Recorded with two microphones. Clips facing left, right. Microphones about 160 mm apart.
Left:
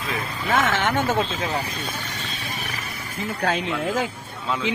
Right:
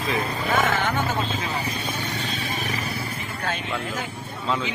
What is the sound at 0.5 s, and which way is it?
Speech, 90° left.